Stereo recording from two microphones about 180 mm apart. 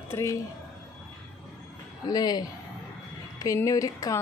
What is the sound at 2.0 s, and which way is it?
Speech, 20° left (ahead or behind).